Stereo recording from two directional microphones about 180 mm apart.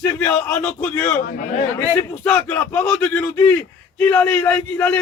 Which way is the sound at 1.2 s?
55° left (ahead or behind).